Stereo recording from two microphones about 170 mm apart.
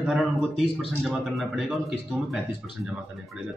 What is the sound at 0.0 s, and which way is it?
A man's voice, centre (ahead or behind).